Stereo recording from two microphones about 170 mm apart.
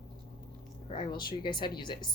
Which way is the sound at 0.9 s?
25° left (ahead or behind).